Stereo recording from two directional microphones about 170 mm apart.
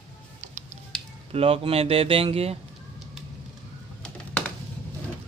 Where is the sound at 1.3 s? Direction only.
35° right (ahead or behind).